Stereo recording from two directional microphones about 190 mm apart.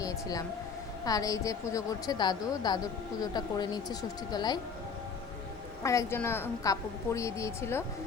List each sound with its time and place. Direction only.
0.0 s a woman's voice: 20° left (ahead or behind)
5.8 s a woman's voice: 15° left (ahead or behind)